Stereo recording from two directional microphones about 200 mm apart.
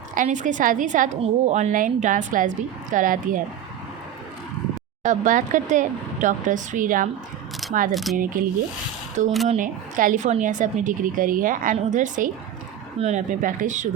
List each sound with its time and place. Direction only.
0.1 s a woman's voice: 40° right (ahead or behind)
5.0 s a woman's voice: 40° right (ahead or behind)
7.6 s a sound: centre (ahead or behind)
7.9 s speech: centre (ahead or behind)
8.2 s a woman's voice: 45° right (ahead or behind)